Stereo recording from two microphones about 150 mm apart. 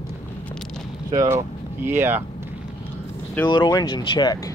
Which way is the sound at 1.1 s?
25° right (ahead or behind).